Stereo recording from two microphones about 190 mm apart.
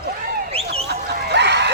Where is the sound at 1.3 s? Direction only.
65° right (ahead or behind).